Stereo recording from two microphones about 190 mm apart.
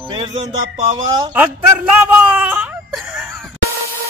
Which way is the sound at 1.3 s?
10° right (ahead or behind).